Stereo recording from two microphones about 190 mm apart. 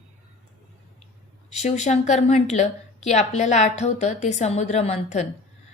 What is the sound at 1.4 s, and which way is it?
A woman's voice, 35° left (ahead or behind).